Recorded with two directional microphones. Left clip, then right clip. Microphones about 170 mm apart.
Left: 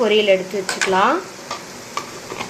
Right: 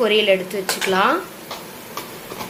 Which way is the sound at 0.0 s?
Centre (ahead or behind).